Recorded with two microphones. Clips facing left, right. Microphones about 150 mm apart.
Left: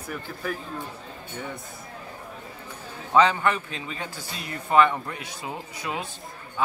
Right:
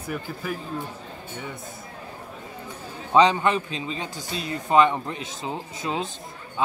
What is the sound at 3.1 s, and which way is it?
A man's voice, 20° right (ahead or behind).